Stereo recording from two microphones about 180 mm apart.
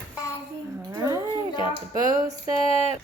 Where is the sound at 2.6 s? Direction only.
35° left (ahead or behind).